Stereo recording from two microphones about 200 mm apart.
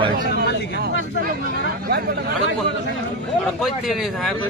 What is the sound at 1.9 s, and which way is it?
Speech, 50° right (ahead or behind).